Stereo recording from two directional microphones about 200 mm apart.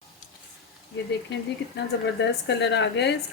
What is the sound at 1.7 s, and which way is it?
A woman's voice, 60° left (ahead or behind).